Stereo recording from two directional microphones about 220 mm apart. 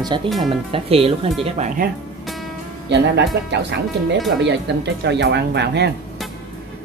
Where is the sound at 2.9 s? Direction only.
50° right (ahead or behind).